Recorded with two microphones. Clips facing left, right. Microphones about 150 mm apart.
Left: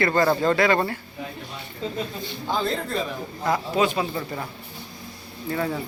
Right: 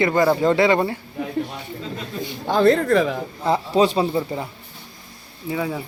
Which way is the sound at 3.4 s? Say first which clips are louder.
Right 4 dB; 30° right (ahead or behind).